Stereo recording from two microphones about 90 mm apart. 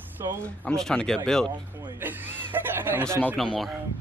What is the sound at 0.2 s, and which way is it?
Speech, 40° right (ahead or behind).